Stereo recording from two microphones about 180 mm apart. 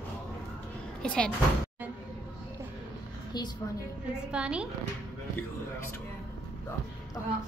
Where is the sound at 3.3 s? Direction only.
25° left (ahead or behind).